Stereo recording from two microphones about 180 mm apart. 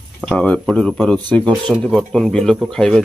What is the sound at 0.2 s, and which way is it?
Speech, 5° left (ahead or behind).